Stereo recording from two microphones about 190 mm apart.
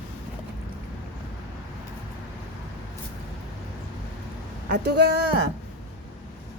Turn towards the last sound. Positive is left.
turn(degrees=-60)  # may be behind; listen again after turning